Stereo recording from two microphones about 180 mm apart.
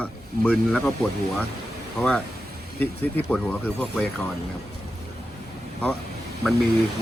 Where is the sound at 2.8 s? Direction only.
10° left (ahead or behind).